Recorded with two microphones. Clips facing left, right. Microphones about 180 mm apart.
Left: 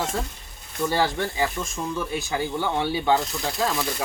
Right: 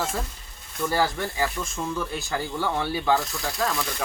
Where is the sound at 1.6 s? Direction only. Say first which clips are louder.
Left 1 dB; 10° left (ahead or behind).